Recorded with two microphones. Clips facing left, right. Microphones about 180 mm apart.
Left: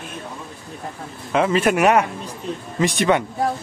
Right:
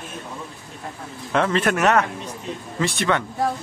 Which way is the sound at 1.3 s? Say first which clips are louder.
Left 3 dB; 10° left (ahead or behind).